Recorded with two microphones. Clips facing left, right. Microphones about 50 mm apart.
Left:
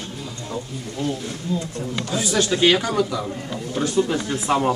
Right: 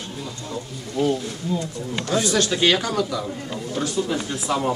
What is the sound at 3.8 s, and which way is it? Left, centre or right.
Speech, left.